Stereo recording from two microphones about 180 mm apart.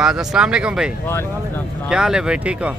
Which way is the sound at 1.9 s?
5° right (ahead or behind).